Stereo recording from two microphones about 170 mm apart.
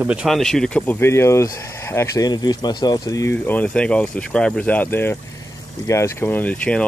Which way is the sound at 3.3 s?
10° left (ahead or behind).